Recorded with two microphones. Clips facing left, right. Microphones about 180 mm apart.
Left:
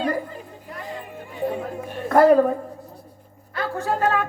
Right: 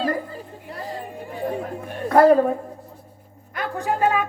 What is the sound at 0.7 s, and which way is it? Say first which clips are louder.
Music: right 2 dB; 35° right (ahead or behind).